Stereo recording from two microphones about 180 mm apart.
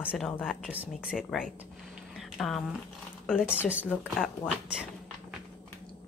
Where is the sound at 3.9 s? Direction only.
Centre (ahead or behind).